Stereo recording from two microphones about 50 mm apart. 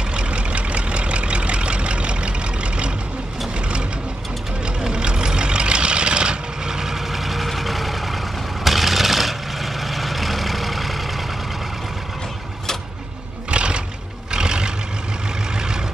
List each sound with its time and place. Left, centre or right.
0.1 s vehicle: right; by 11.2 s centre
13.5 s music: right
14.3 s vehicle: centre